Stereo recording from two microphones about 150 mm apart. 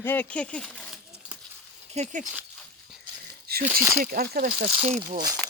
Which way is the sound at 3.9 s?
80° right.